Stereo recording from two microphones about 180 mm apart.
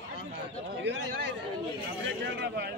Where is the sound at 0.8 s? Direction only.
75° right (ahead or behind).